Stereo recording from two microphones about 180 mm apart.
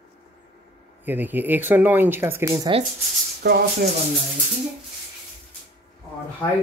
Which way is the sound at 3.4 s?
60° right (ahead or behind).